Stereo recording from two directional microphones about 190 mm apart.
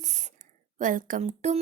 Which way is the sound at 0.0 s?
40° right (ahead or behind).